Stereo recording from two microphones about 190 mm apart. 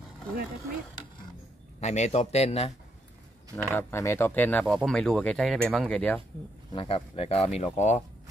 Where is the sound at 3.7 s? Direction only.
10° left (ahead or behind).